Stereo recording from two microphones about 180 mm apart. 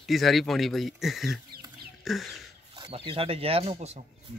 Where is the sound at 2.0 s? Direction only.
Centre (ahead or behind).